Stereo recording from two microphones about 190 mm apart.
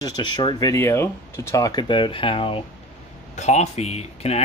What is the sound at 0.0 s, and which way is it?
Speech, 20° left (ahead or behind).